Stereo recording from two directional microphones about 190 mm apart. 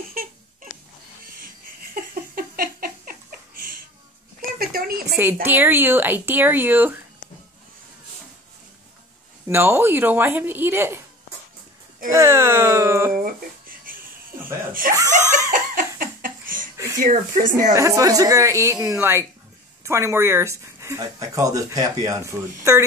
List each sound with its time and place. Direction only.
0.1 s crying: 50° right (ahead or behind)
2.0 s a sound: 50° right (ahead or behind)
5.1 s speech: 10° right (ahead or behind)
9.5 s speech: 10° right (ahead or behind)
12.1 s speech: 15° right (ahead or behind)
13.2 s music: 50° right (ahead or behind)
15.0 s laughter: 15° right (ahead or behind)
15.5 s laughter: 45° right (ahead or behind)
17.0 s speech: 40° right (ahead or behind)
17.7 s speech: 15° right (ahead or behind)